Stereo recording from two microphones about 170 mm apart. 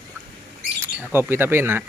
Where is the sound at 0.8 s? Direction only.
10° right (ahead or behind).